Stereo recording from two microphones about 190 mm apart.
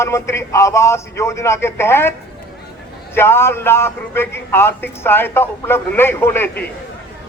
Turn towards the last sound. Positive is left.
turn(degrees=10)  # may be behind; listen again after turning